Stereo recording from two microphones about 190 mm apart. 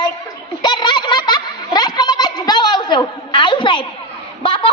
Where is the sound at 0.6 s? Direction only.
25° left (ahead or behind).